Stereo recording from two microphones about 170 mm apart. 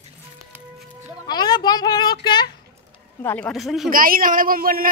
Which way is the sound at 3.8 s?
55° right (ahead or behind).